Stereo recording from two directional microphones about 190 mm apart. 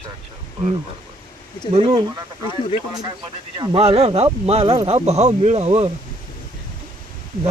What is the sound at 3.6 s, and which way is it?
Speech, 25° right (ahead or behind).